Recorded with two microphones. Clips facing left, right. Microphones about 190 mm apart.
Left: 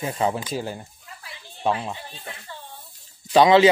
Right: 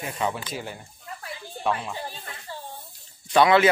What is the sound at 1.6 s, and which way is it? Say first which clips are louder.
Speech: left 3 dB; 25° left (ahead or behind).